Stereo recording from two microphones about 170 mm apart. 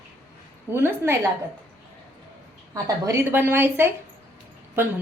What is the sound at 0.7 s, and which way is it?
Speech, 15° right (ahead or behind).